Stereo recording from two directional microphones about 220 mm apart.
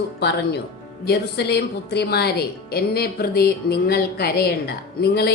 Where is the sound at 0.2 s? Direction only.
50° left (ahead or behind).